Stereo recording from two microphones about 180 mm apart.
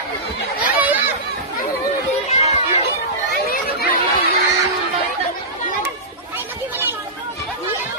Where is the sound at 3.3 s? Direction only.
60° left (ahead or behind).